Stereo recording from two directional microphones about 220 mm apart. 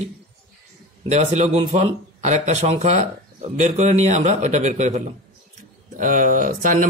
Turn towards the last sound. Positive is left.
turn(degrees=-35)  # may be behind; listen again after turning